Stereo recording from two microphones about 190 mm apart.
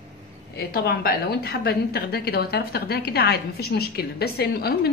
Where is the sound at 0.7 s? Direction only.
55° left (ahead or behind).